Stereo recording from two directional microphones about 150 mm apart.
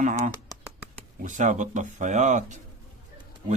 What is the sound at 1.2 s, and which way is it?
A man's voice, 55° right (ahead or behind).